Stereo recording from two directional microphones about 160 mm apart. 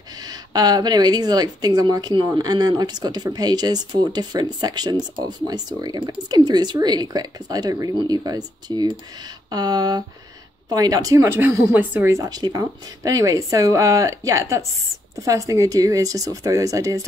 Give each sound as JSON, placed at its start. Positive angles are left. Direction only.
{"t": 0.2, "sound": "speech", "side_deg": -25}